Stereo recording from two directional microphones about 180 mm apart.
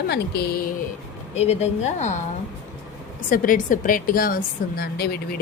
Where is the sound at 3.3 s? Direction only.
50° left (ahead or behind).